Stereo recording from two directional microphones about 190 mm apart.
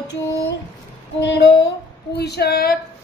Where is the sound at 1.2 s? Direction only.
70° left (ahead or behind).